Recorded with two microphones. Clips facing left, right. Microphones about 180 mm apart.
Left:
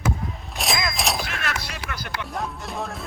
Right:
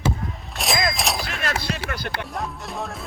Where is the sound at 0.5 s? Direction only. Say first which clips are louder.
Right 3 dB; centre (ahead or behind).